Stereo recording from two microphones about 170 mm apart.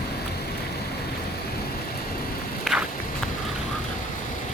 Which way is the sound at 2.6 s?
5° right (ahead or behind).